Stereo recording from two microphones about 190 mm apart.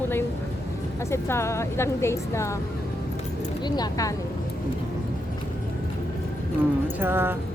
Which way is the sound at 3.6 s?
20° left (ahead or behind).